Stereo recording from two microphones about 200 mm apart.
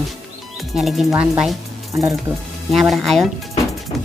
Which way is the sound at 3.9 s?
Centre (ahead or behind).